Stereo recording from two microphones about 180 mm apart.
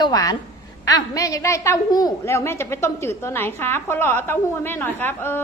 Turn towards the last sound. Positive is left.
turn(degrees=10)  # may be behind; listen again after turning